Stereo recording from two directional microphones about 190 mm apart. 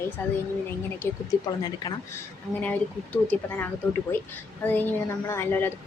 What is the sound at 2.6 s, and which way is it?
A woman's voice, 10° left (ahead or behind).